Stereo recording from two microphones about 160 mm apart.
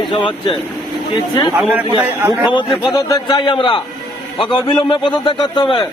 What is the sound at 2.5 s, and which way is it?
A man's voice, 30° left (ahead or behind).